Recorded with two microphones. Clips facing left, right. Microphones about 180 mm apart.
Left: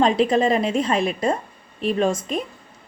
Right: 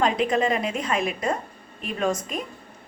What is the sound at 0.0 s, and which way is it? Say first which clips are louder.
A woman's voice: left 4 dB; 30° left (ahead or behind).